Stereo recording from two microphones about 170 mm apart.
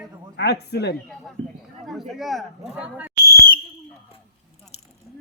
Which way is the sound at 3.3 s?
60° left (ahead or behind).